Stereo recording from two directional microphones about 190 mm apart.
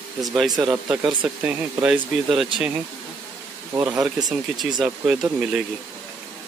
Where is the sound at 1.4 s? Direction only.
5° right (ahead or behind).